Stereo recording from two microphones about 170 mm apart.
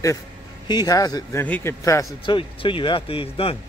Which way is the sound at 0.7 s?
20° left (ahead or behind).